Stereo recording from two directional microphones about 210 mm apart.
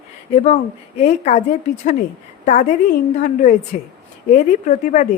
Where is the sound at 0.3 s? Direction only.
30° left (ahead or behind).